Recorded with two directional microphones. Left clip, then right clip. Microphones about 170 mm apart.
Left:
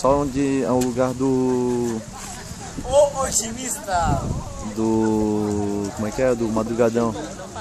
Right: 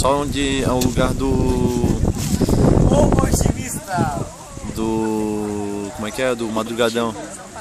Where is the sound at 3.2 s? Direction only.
25° left (ahead or behind).